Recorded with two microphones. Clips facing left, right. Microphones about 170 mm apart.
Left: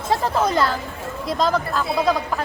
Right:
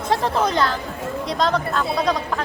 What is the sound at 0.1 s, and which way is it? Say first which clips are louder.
A woman's voice: even; centre (ahead or behind).